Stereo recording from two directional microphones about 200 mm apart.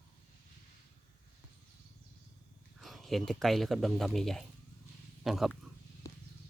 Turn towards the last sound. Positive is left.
turn(degrees=15)  # may be behind; listen again after turning